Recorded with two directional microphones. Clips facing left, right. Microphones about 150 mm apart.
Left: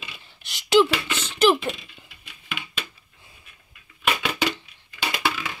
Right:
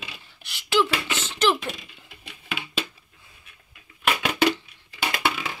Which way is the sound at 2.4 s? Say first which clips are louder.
Right 4 dB; 30° right (ahead or behind).